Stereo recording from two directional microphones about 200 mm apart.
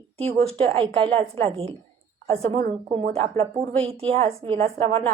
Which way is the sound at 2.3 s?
30° right (ahead or behind).